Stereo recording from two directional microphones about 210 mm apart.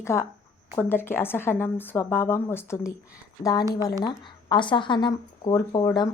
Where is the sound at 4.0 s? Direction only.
20° left (ahead or behind).